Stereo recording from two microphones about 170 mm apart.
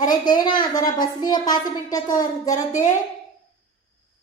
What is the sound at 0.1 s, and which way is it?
A woman's voice, 25° left (ahead or behind).